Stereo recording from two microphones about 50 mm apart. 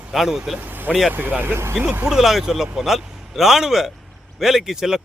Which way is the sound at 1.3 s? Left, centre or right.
Right.